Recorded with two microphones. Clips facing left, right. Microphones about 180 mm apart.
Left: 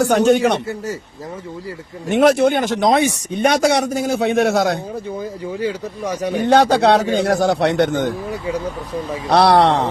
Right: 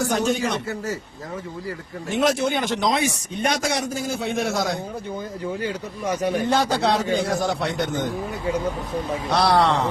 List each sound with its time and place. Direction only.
0.0 s a man's voice: 65° left (ahead or behind)
2.0 s a man's voice: 60° left (ahead or behind)
3.4 s a man's voice: 70° left (ahead or behind)
5.5 s speech: 30° left (ahead or behind)
6.2 s a man's voice: 70° left (ahead or behind)
9.3 s a man's voice: 70° left (ahead or behind)